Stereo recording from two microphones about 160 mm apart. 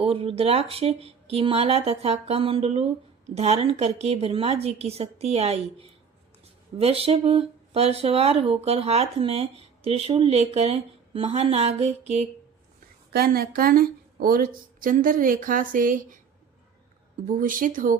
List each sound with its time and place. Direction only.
0.0 s speech: 35° right (ahead or behind)
13.1 s speech: 75° right (ahead or behind); by 16.2 s 55° right (ahead or behind)
17.2 s speech: 60° right (ahead or behind)